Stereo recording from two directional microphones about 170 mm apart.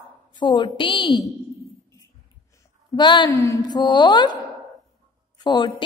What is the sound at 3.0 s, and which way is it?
A woman's voice, 25° left (ahead or behind).